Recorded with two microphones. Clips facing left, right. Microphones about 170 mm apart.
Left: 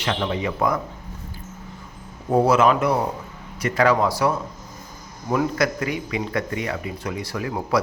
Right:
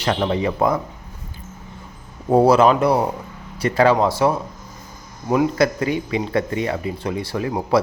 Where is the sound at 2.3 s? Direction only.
30° right (ahead or behind).